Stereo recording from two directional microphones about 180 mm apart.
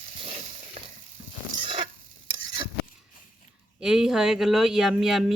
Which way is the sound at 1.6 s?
30° right (ahead or behind).